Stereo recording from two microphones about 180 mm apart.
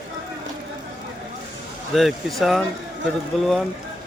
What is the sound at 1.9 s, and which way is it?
Speech, centre (ahead or behind).